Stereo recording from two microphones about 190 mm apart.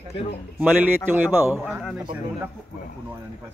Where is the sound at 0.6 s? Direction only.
10° right (ahead or behind).